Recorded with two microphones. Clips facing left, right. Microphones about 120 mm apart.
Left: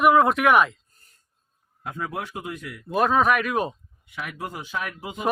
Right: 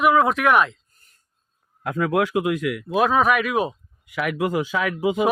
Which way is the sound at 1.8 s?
90° right.